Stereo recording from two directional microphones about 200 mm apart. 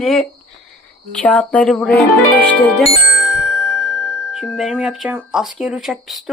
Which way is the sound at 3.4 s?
75° right (ahead or behind).